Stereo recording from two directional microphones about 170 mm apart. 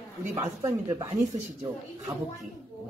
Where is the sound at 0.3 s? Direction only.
20° right (ahead or behind).